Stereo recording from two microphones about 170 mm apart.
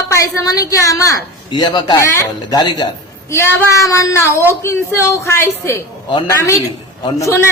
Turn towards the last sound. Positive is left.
turn(degrees=20)  # may be behind; listen again after turning